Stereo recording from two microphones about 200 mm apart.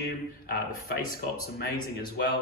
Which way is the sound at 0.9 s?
50° left (ahead or behind).